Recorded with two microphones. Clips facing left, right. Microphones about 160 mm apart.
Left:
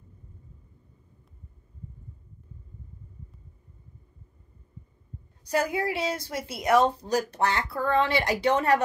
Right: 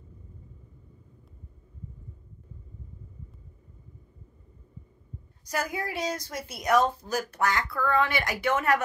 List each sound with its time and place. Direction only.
5.5 s a woman's voice: 30° left (ahead or behind)